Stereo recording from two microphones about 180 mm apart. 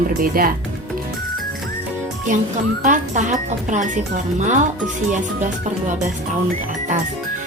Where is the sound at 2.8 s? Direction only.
45° right (ahead or behind).